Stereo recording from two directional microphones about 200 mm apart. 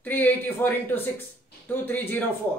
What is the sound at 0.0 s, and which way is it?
A man's voice, 10° left (ahead or behind).